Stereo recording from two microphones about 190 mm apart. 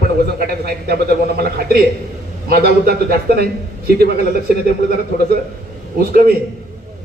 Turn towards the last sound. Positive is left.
turn(degrees=-50)  # may be behind; listen again after turning